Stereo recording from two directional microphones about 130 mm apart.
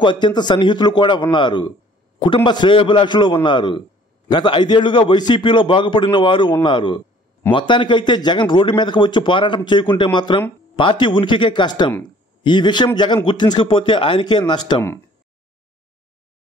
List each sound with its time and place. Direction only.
0.0 s a man's voice: 35° left (ahead or behind)